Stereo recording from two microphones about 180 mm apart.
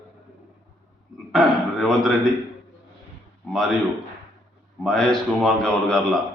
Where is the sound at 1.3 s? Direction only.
Centre (ahead or behind).